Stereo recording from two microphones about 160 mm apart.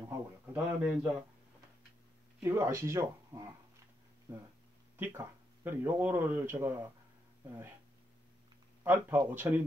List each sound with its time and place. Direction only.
0.5 s speech: 10° right (ahead or behind)
2.4 s speech: 15° right (ahead or behind)
4.9 s speech: 15° right (ahead or behind)
8.8 s speech: 15° right (ahead or behind)